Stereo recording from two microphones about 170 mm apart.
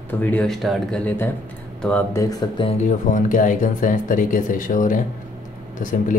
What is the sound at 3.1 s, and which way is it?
Speech, 50° left (ahead or behind).